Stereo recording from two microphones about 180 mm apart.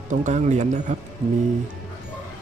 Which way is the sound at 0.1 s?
40° right (ahead or behind).